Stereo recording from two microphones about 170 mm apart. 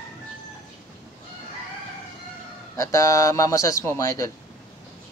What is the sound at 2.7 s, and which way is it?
Speech, 20° left (ahead or behind).